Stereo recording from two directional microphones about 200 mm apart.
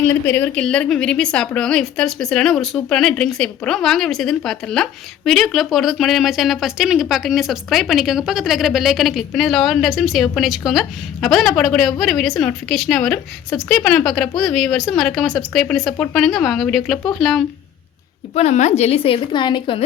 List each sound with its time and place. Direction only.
0.3 s a woman's voice: 10° left (ahead or behind)
18.3 s a woman's voice: 35° left (ahead or behind)